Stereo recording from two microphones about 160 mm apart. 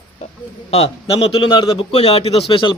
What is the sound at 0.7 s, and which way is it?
A man's voice, 40° left (ahead or behind).